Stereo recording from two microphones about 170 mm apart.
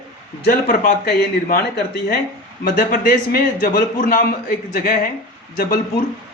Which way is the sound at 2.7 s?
55° left (ahead or behind).